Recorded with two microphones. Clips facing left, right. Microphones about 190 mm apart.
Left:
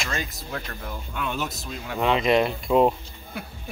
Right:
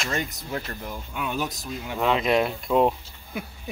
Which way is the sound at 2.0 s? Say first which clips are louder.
Left 1 dB; centre (ahead or behind).